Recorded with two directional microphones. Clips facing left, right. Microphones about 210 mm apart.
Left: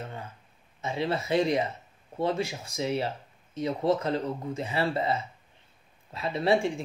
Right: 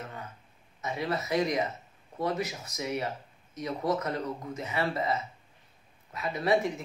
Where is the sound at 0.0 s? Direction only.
30° left (ahead or behind).